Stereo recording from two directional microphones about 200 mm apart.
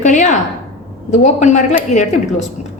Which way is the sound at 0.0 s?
40° left (ahead or behind).